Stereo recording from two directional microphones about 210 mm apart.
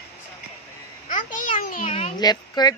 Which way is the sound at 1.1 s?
40° left (ahead or behind).